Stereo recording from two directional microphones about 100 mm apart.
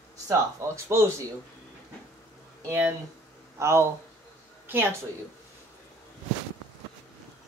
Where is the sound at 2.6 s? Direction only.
25° right (ahead or behind).